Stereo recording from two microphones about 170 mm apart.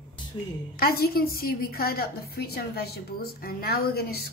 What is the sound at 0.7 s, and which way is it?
A woman's voice, 65° left (ahead or behind).